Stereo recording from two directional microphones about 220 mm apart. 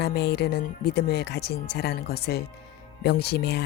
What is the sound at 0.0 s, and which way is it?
Speech, 45° left (ahead or behind).